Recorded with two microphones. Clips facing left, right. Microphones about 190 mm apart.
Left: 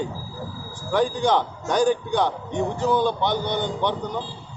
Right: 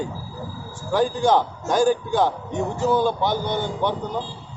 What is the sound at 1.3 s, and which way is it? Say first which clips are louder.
A man's voice: right 2 dB; 5° right (ahead or behind).